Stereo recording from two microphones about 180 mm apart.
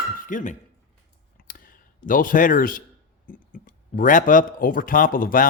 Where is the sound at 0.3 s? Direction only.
45° left (ahead or behind).